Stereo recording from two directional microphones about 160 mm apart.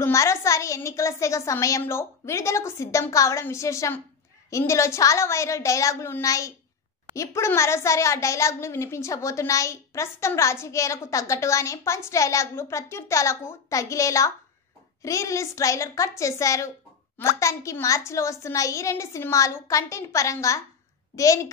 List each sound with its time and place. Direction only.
0.0 s a woman's voice: 20° left (ahead or behind)